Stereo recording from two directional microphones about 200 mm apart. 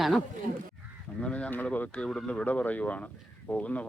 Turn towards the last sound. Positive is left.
turn(degrees=5)  # may be behind; listen again after turning